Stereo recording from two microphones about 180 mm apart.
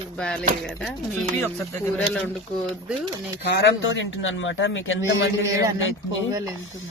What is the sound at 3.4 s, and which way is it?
A man's voice, 75° left (ahead or behind).